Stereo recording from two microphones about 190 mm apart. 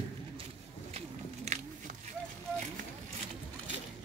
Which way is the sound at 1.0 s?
35° right (ahead or behind).